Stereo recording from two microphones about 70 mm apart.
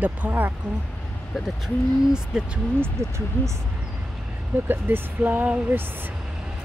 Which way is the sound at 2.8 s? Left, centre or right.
Right.